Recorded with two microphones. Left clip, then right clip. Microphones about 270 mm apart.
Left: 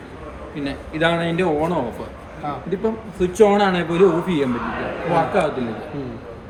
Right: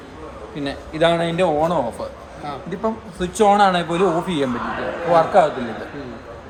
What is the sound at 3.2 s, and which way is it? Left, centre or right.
A man's voice, centre.